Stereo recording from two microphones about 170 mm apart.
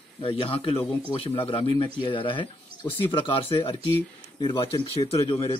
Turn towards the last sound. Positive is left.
turn(degrees=30)  # may be behind; listen again after turning